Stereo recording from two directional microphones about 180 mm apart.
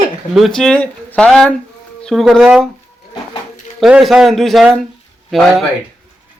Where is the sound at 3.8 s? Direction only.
Centre (ahead or behind).